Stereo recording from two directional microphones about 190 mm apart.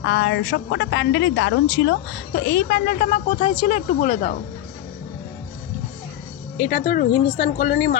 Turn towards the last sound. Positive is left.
turn(degrees=50)  # may be behind; listen again after turning